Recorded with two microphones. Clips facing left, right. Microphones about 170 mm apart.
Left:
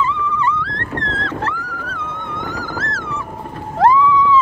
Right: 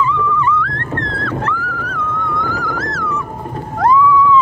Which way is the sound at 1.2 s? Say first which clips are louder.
Right 3 dB; 25° left (ahead or behind).